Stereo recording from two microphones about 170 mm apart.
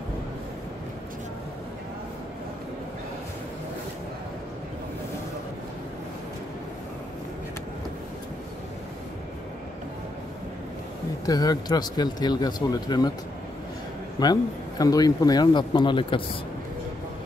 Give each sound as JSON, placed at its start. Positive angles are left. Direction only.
{"t": 11.2, "sound": "a man's voice", "side_deg": 20}
{"t": 14.2, "sound": "a man's voice", "side_deg": 20}